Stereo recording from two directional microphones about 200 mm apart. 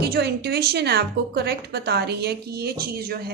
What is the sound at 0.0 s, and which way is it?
A woman's voice, 55° right (ahead or behind).